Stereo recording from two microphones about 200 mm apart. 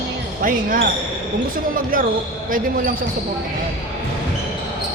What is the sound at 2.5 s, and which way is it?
Speech, 45° right (ahead or behind).